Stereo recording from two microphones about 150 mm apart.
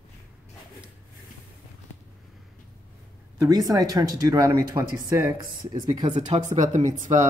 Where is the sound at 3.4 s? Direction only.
25° right (ahead or behind).